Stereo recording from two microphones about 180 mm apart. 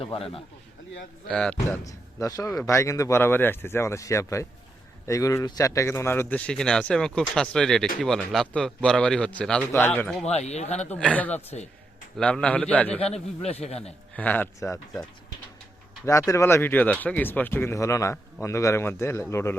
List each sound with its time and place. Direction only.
0.0 s a man's voice: 30° left (ahead or behind)
1.3 s speech: 5° left (ahead or behind)
1.8 s a man's voice: 20° left (ahead or behind)
10.2 s a man's voice: 35° left (ahead or behind)
10.9 s speech: 5° left (ahead or behind)
13.0 s a man's voice: 35° left (ahead or behind)
14.2 s speech: 10° left (ahead or behind)
16.0 s speech: 15° left (ahead or behind)